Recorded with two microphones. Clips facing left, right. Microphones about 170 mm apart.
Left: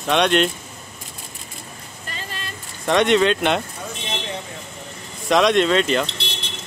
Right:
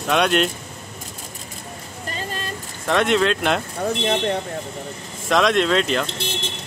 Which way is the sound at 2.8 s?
Centre (ahead or behind).